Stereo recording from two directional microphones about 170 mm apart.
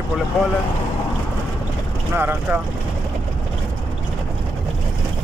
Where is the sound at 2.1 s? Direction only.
10° right (ahead or behind).